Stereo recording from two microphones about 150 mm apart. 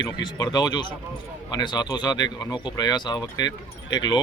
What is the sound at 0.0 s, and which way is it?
Speech, 25° left (ahead or behind).